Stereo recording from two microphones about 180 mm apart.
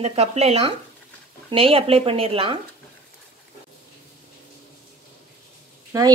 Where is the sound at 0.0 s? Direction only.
35° right (ahead or behind).